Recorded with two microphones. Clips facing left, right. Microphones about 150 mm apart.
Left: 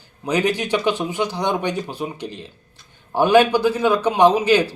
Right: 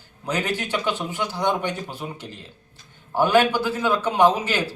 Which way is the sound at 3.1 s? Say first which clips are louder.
Left 4 dB; 15° left (ahead or behind).